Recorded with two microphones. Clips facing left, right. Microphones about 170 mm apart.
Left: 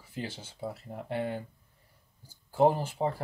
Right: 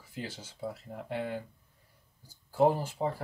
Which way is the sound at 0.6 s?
25° left (ahead or behind).